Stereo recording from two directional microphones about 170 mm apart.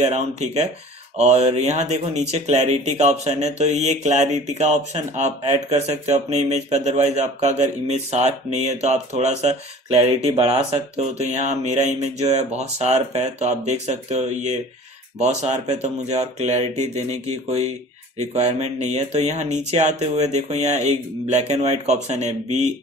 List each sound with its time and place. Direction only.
0.0 s speech: 40° right (ahead or behind)